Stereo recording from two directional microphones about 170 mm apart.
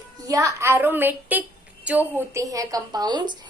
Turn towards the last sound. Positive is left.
turn(degrees=-25)  # may be behind; listen again after turning